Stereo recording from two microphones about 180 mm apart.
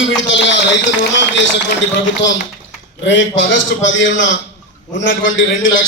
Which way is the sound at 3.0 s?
90° left.